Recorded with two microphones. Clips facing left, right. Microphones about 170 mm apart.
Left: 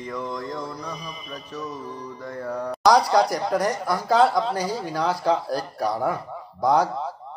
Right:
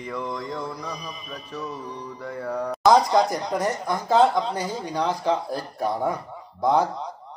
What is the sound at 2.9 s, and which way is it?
Speech, 20° right (ahead or behind).